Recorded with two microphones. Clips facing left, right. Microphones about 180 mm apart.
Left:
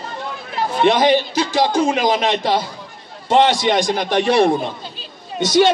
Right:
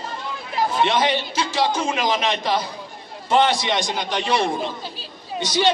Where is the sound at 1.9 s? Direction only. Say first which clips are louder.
Left 5 dB; 35° left (ahead or behind).